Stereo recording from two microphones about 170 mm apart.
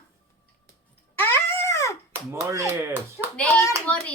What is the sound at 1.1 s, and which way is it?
Dog, 15° left (ahead or behind).